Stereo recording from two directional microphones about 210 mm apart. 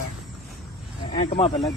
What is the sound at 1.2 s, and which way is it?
Speech, 25° left (ahead or behind).